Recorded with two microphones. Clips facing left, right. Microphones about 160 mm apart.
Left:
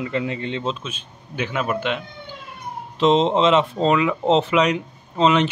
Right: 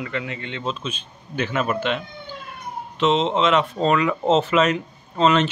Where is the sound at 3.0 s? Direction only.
35° left (ahead or behind); by 5.4 s 15° left (ahead or behind).